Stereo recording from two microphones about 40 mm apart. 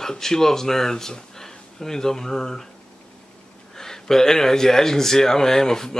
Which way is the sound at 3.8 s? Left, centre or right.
Centre.